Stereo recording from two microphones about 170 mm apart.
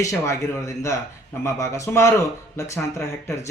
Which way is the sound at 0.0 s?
20° left (ahead or behind).